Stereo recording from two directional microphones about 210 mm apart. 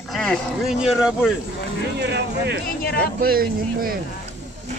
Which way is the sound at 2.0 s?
55° right (ahead or behind).